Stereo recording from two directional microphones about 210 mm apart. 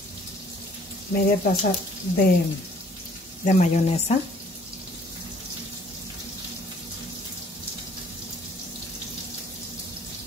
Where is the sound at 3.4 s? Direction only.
35° left (ahead or behind).